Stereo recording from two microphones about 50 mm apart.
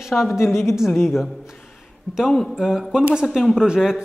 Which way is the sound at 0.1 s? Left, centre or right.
Centre.